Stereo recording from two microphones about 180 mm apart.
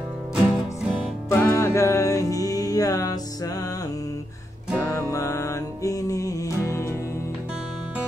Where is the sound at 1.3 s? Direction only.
15° left (ahead or behind).